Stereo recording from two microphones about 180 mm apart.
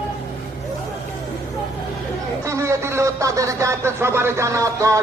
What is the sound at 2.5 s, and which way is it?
Speech, 15° right (ahead or behind).